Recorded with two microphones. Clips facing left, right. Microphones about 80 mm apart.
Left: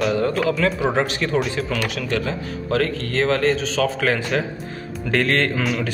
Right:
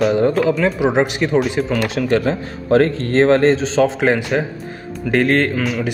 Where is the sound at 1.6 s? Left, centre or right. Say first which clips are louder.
Right 6 dB; right.